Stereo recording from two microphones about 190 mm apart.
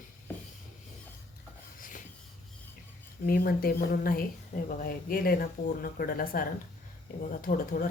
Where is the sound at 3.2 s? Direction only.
50° left (ahead or behind).